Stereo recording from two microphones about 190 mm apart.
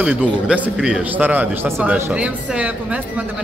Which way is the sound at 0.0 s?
10° right (ahead or behind).